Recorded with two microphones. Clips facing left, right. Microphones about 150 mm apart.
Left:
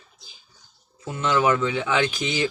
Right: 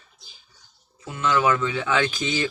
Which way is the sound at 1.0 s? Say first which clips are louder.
Even; 25° left (ahead or behind).